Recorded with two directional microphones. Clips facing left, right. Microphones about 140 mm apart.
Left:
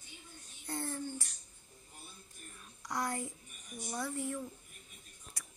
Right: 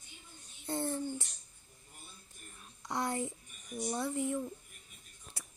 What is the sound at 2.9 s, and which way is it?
Speech, 25° right (ahead or behind).